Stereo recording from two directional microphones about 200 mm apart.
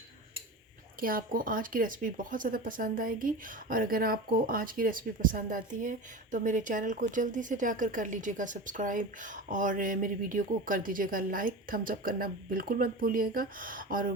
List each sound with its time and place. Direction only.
0.9 s speech: 45° right (ahead or behind)